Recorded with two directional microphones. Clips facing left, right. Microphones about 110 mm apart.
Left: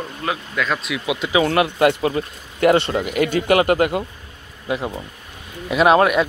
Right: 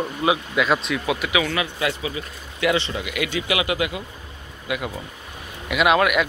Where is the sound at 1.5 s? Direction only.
55° left (ahead or behind).